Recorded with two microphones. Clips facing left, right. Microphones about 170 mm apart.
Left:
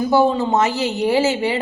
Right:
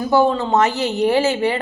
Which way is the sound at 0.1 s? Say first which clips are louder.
Right 1 dB; 10° left (ahead or behind).